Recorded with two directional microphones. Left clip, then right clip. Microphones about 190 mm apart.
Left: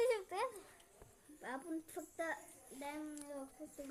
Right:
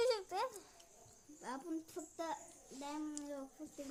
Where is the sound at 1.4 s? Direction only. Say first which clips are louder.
Even; 70° right (ahead or behind).